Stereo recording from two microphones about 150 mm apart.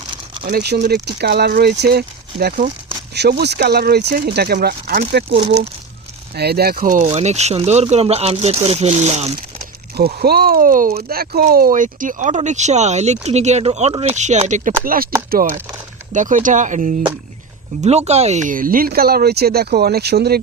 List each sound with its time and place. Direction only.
0.4 s speech: 85° right; by 2.7 s 65° right (ahead or behind)
3.2 s speech: 90° right
6.3 s speech: 90° right; by 7.1 s 60° right (ahead or behind)
7.1 s speech: 45° right (ahead or behind)
10.2 s speech: 90° right
16.1 s speech: 60° right (ahead or behind); by 20.4 s 90° right